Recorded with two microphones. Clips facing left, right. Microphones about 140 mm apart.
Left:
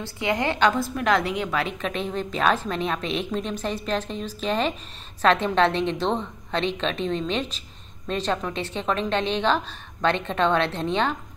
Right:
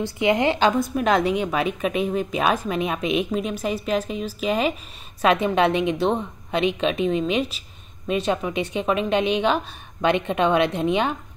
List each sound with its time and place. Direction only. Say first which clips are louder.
0.0 s a woman's voice: right 5 dB; 20° right (ahead or behind)